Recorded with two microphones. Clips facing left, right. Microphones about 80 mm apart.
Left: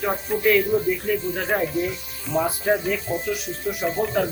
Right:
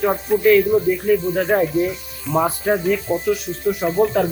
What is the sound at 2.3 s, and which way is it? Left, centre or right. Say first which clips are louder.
Speech: right 4 dB; right.